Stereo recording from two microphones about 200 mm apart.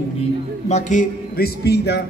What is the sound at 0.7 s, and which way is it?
Speech, 35° left (ahead or behind).